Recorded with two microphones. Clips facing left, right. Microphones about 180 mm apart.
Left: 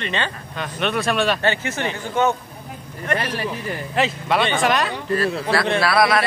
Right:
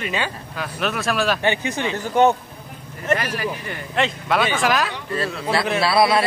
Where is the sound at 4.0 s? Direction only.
Centre (ahead or behind).